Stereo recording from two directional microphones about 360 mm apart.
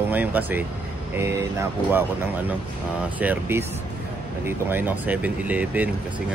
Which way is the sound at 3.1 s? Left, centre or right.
Centre.